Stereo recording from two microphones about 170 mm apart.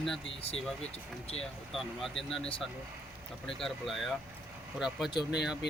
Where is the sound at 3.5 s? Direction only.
Centre (ahead or behind).